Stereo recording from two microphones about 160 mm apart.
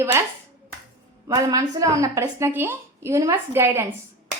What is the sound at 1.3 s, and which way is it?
A woman's voice, 20° right (ahead or behind).